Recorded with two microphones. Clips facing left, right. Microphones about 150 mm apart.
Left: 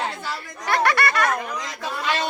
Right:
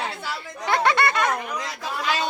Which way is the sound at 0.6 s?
20° right (ahead or behind).